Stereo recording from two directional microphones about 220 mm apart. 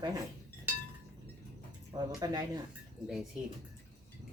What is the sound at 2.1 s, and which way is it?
Speech, 15° right (ahead or behind).